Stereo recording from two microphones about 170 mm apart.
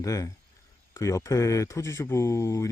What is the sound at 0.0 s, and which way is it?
Speech, 20° left (ahead or behind).